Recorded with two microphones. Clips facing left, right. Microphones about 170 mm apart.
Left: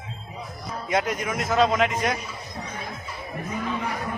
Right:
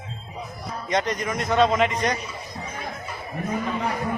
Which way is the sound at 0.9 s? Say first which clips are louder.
Even; 5° left (ahead or behind).